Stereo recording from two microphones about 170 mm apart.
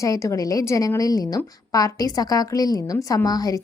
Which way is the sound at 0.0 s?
20° left (ahead or behind).